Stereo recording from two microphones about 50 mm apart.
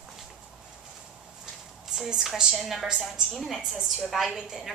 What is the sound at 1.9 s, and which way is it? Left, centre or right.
A woman's voice, centre.